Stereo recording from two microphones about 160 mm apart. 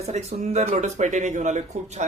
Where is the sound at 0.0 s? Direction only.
40° right (ahead or behind).